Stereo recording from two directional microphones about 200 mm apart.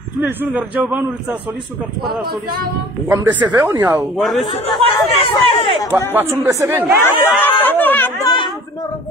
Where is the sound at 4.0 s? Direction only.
Centre (ahead or behind).